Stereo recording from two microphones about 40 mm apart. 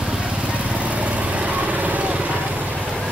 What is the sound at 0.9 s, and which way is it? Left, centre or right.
Vehicle, right.